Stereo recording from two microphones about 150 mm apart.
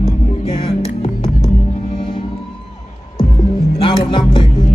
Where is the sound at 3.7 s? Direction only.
35° left (ahead or behind).